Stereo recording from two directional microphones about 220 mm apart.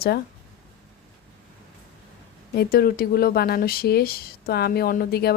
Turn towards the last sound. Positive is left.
turn(degrees=45)  # may be behind; listen again after turning